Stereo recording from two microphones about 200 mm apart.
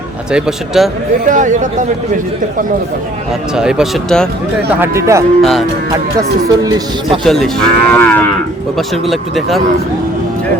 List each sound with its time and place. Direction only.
0.3 s moo: 5° right (ahead or behind)
1.3 s speech: 40° right (ahead or behind)
3.5 s moo: 5° right (ahead or behind)
4.8 s speech: 15° right (ahead or behind)
5.4 s moo: centre (ahead or behind)
6.7 s speech: 20° right (ahead or behind)
7.3 s moo: centre (ahead or behind)